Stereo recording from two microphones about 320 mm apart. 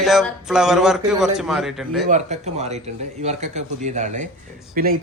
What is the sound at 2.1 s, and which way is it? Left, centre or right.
Speech, right.